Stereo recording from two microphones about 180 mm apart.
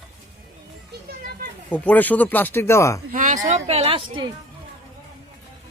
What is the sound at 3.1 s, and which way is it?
A woman's voice, 45° right (ahead or behind).